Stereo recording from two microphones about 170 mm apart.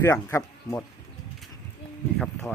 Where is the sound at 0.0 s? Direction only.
15° left (ahead or behind).